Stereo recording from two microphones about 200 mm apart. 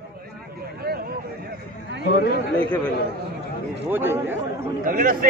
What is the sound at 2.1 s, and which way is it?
Speech, 55° left (ahead or behind).